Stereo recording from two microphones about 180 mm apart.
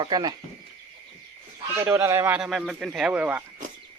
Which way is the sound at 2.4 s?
Centre (ahead or behind).